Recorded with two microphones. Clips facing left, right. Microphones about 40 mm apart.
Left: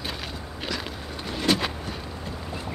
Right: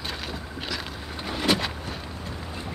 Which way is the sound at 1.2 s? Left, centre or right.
Centre.